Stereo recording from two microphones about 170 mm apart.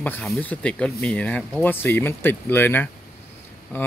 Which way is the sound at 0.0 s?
5° left (ahead or behind).